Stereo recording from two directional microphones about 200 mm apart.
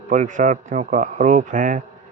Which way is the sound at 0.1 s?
40° right (ahead or behind).